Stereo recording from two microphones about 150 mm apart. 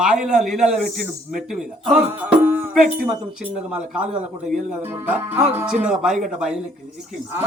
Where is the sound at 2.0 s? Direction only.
15° right (ahead or behind).